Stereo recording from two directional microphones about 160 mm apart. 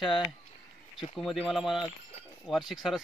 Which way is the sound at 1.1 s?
Centre (ahead or behind).